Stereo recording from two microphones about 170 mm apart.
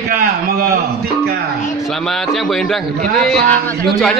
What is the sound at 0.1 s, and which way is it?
Speech, 55° right (ahead or behind).